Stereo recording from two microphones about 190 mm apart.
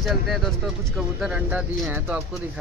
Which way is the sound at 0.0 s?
Centre (ahead or behind).